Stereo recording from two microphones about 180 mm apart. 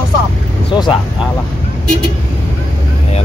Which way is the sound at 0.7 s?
25° left (ahead or behind).